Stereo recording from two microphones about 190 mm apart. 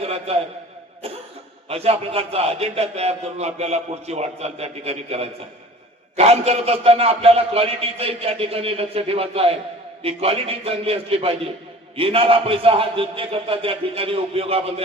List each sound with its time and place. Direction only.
0.0 s a man's voice: 30° right (ahead or behind)
1.7 s a man's voice: 30° right (ahead or behind)